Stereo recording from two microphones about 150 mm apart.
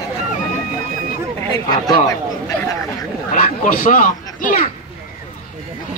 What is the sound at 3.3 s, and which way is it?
Speech, 65° left (ahead or behind).